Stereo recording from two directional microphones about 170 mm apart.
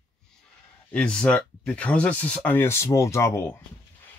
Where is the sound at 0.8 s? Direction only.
5° left (ahead or behind).